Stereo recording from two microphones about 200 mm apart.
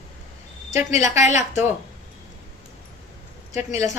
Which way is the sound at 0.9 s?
35° left (ahead or behind).